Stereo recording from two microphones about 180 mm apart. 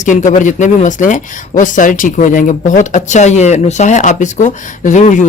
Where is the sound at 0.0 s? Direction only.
45° left (ahead or behind).